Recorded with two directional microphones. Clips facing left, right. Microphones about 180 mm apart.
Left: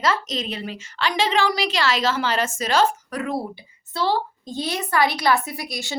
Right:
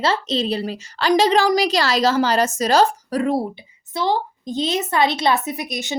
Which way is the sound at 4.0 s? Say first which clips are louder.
Right 2 dB; 15° right (ahead or behind).